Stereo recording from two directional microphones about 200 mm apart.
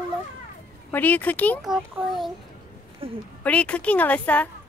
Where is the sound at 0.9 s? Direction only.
10° left (ahead or behind).